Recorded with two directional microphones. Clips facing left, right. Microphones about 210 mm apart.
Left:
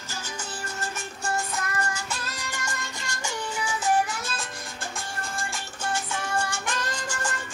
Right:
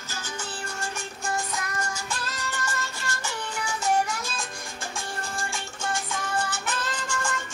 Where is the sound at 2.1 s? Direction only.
10° left (ahead or behind).